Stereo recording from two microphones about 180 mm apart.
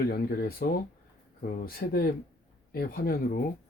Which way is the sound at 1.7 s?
55° left (ahead or behind).